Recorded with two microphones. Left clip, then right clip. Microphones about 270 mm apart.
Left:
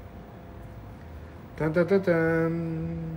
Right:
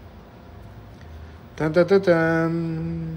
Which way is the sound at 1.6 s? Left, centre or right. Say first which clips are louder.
Right 6 dB; centre.